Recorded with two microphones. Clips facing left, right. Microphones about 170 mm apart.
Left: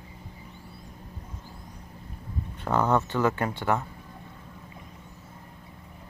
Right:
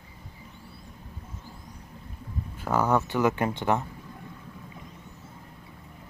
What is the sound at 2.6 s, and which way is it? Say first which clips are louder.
Speech: even; 5° right (ahead or behind).